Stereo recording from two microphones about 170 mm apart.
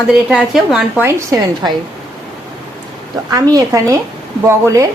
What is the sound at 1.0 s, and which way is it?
Speech, 20° right (ahead or behind).